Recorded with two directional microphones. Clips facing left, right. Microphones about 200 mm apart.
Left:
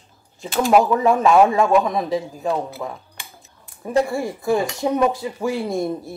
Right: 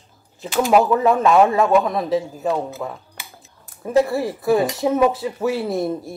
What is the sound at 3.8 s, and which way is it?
Speech, centre (ahead or behind).